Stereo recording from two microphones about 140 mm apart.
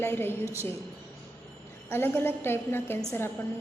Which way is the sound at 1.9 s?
15° left (ahead or behind).